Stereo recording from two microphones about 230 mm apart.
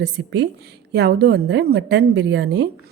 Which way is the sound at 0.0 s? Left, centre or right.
Right.